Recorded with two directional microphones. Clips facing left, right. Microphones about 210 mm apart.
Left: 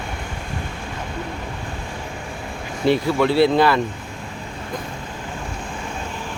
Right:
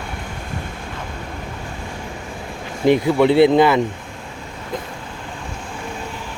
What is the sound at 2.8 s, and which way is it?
Speech, 15° right (ahead or behind).